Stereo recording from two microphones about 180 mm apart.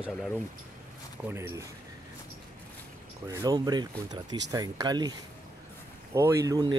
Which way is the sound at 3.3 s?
20° right (ahead or behind).